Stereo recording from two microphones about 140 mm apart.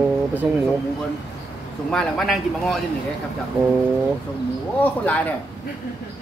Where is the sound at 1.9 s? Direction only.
5° left (ahead or behind).